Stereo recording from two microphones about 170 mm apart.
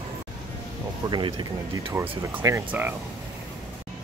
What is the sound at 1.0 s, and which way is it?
Speech, 25° right (ahead or behind).